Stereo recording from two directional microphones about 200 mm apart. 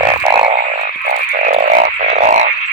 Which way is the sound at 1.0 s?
40° right (ahead or behind).